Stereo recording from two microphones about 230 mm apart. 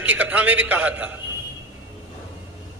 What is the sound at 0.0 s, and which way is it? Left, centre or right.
A man's voice, centre.